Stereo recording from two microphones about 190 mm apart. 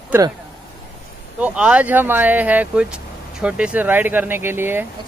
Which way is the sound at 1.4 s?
5° right (ahead or behind).